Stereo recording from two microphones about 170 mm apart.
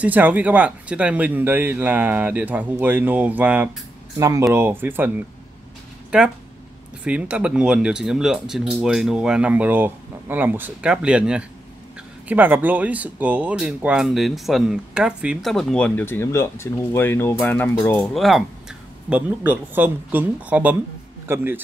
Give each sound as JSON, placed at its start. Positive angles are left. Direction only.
{"t": 0.0, "sound": "speech", "side_deg": -10}
{"t": 4.2, "sound": "speech", "side_deg": -20}